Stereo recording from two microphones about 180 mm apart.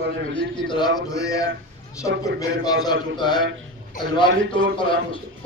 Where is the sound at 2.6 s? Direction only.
20° left (ahead or behind).